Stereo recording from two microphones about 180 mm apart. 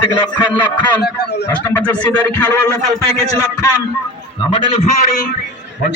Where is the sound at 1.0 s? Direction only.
65° left (ahead or behind).